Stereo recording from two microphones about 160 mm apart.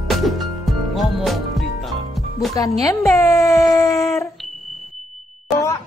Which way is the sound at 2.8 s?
20° left (ahead or behind).